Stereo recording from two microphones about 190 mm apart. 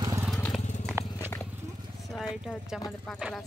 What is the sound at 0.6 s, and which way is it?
Crushing, 35° left (ahead or behind).